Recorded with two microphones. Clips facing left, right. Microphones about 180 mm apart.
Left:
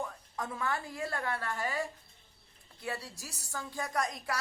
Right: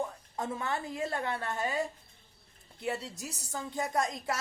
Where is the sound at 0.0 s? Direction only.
25° right (ahead or behind).